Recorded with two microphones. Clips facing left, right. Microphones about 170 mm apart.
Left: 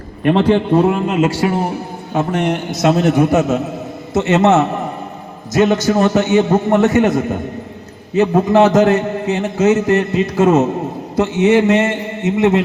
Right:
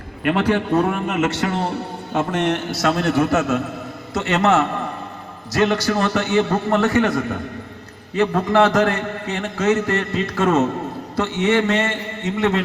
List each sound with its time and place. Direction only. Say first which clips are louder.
0.3 s a man's voice: left 6 dB; 25° left (ahead or behind)
1.5 s a man's voice: left 3 dB; 10° left (ahead or behind)